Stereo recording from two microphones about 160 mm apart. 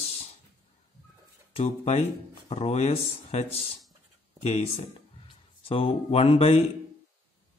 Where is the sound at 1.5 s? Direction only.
40° left (ahead or behind).